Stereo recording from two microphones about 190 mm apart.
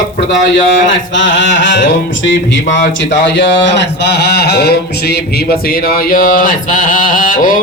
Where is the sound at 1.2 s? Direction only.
75° left (ahead or behind).